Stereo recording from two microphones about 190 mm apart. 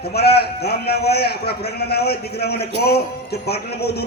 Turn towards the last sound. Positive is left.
turn(degrees=55)  # may be behind; listen again after turning